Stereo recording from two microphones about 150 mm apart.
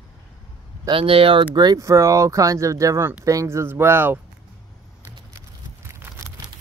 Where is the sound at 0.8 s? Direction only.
35° right (ahead or behind); by 4.2 s 15° right (ahead or behind).